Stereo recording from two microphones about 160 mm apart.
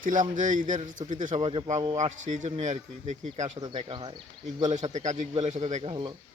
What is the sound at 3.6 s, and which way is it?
Speech, 25° right (ahead or behind).